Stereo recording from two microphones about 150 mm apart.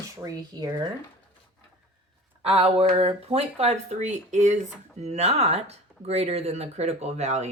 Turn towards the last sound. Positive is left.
turn(degrees=-50)  # may be behind; listen again after turning